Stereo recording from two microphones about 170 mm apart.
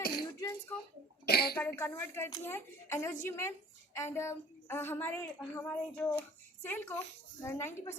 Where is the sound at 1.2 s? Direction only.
65° left (ahead or behind).